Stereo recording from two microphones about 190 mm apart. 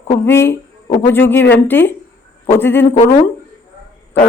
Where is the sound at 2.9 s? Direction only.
40° left (ahead or behind).